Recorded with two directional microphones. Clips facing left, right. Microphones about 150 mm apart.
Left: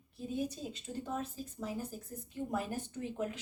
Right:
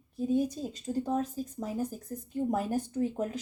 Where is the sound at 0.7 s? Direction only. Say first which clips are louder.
Right 9 dB; 40° right (ahead or behind).